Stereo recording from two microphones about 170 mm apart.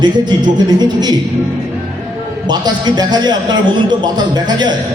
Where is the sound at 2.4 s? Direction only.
25° right (ahead or behind).